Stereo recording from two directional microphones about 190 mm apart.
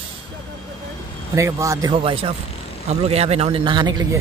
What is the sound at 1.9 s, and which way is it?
Speech, 30° right (ahead or behind).